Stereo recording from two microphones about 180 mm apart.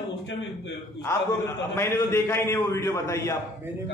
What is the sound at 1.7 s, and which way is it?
A man's voice, 15° left (ahead or behind).